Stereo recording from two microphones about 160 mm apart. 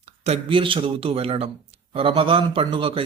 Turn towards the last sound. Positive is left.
turn(degrees=-35)  # may be behind; listen again after turning